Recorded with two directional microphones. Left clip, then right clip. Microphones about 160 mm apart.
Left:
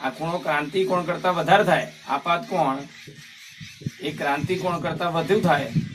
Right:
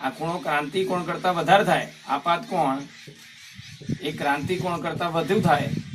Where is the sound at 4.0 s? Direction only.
Centre (ahead or behind).